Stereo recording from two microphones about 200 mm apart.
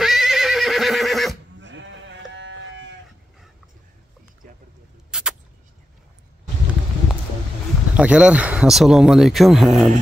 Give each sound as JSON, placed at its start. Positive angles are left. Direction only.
{"t": 0.0, "sound": "neigh", "side_deg": 0}
{"t": 1.6, "sound": "sheep", "side_deg": -65}
{"t": 5.1, "sound": "vehicle", "side_deg": -5}
{"t": 7.9, "sound": "speech", "side_deg": -5}